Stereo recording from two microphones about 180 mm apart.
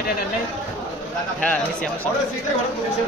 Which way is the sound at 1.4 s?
5° left (ahead or behind).